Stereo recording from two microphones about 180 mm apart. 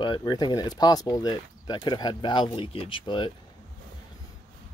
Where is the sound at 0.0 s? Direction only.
25° left (ahead or behind).